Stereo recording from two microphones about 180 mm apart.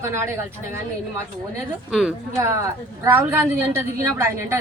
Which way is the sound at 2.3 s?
15° right (ahead or behind).